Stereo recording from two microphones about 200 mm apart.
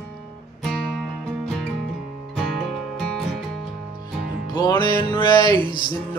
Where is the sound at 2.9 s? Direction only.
5° left (ahead or behind).